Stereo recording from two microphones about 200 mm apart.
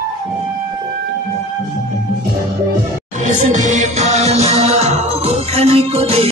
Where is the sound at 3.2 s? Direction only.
35° right (ahead or behind).